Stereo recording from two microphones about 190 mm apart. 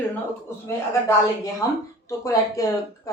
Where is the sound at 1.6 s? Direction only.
20° left (ahead or behind).